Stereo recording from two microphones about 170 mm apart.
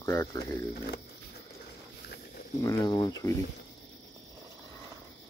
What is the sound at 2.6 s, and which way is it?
Speech, 20° left (ahead or behind).